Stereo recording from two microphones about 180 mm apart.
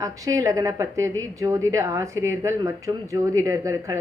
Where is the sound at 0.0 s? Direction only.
20° right (ahead or behind).